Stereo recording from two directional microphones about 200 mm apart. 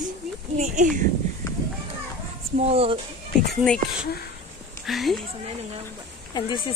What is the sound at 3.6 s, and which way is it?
Speech, 5° left (ahead or behind).